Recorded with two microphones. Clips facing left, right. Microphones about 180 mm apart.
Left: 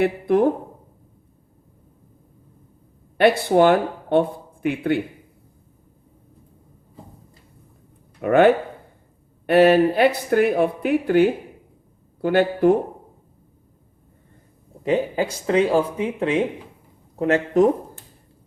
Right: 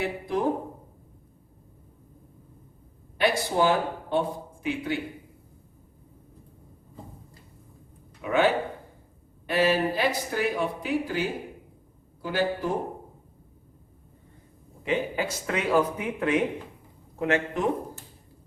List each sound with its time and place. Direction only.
0.0 s speech: 60° left (ahead or behind)
3.2 s speech: 60° left (ahead or behind)
8.2 s speech: 55° left (ahead or behind)
14.8 s speech: 35° left (ahead or behind)